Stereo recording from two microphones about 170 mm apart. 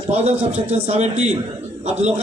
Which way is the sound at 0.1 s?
40° right (ahead or behind).